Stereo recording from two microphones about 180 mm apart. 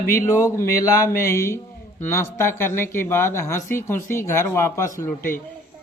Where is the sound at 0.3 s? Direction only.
15° left (ahead or behind).